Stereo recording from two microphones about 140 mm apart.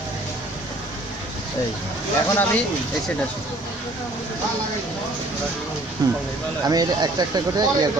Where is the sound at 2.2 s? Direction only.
15° left (ahead or behind).